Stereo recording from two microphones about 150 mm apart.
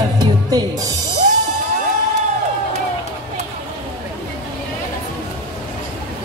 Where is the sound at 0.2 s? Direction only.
25° right (ahead or behind).